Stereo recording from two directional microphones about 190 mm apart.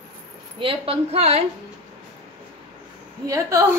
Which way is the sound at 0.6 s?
30° right (ahead or behind).